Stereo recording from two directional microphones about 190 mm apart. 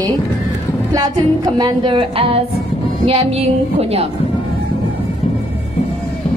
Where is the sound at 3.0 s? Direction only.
30° right (ahead or behind).